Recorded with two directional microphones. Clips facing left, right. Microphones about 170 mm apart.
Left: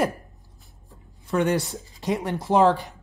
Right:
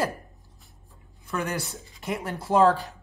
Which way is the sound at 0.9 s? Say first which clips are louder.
Left 6 dB; 25° left (ahead or behind).